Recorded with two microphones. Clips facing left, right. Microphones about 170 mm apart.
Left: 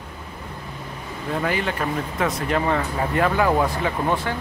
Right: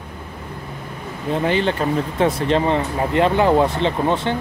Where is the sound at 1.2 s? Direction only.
25° right (ahead or behind).